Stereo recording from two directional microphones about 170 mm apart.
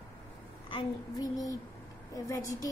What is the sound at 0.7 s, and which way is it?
A child's voice, 25° left (ahead or behind).